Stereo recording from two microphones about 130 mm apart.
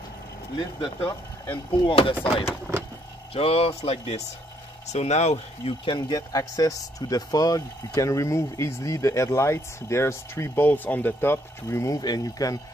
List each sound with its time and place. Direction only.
0.6 s speech: 40° left (ahead or behind)
2.7 s vehicle: 20° right (ahead or behind)
3.3 s speech: 50° left (ahead or behind)
5.9 s speech: 35° left (ahead or behind)